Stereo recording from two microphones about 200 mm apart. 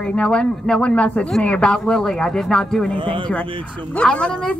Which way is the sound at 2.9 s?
25° right (ahead or behind).